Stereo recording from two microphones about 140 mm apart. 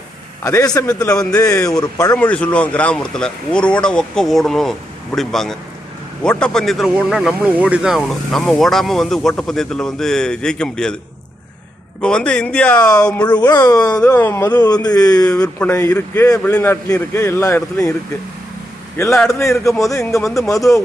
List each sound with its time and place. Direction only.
0.4 s a man's voice: 25° left (ahead or behind)
2.1 s speech: 10° left (ahead or behind)
12.0 s speech: 5° left (ahead or behind)
13.2 s a man's voice: 30° left (ahead or behind)
13.9 s speech: 10° left (ahead or behind)
14.5 s a man's voice: 30° left (ahead or behind)
15.5 s a man's voice: 15° left (ahead or behind)
19.3 s a man's voice: 20° left (ahead or behind)